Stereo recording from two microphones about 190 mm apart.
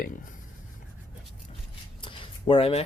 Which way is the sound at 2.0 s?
30° left (ahead or behind).